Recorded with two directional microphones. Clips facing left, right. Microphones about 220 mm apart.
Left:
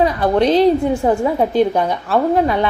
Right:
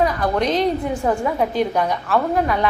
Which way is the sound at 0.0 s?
30° left (ahead or behind).